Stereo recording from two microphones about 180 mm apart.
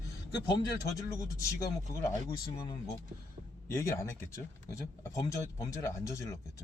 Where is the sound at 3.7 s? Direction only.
15° left (ahead or behind).